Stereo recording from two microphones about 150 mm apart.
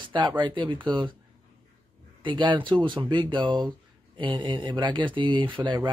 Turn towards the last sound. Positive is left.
turn(degrees=-30)  # may be behind; listen again after turning